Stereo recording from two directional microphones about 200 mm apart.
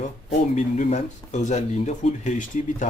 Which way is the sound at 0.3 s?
35° left (ahead or behind).